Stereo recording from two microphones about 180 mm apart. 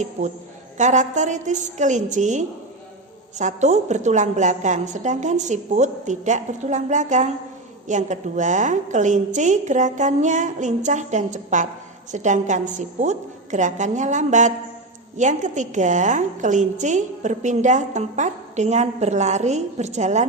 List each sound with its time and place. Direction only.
0.2 s a woman's voice: 40° right (ahead or behind)